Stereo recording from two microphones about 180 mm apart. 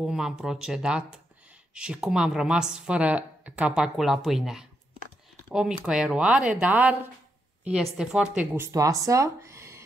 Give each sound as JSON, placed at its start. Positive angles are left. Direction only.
{"t": 0.0, "sound": "speech", "side_deg": -5}
{"t": 8.7, "sound": "speech", "side_deg": -20}